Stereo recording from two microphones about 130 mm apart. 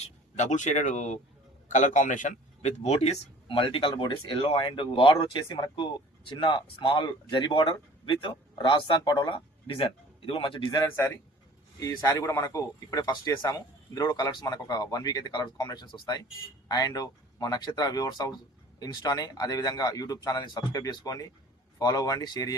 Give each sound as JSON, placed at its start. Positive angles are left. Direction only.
{"t": 0.0, "sound": "speech", "side_deg": 65}
{"t": 10.8, "sound": "speech", "side_deg": 20}